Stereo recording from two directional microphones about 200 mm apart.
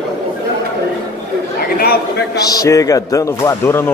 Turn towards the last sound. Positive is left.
turn(degrees=10)  # may be behind; listen again after turning